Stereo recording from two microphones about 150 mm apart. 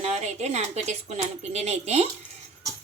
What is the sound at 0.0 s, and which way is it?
Speech, 45° right (ahead or behind).